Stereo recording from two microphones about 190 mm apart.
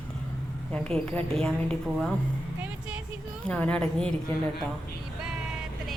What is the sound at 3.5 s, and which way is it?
Speech, 5° left (ahead or behind).